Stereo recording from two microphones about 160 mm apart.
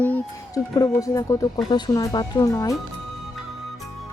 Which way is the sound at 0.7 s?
20° left (ahead or behind).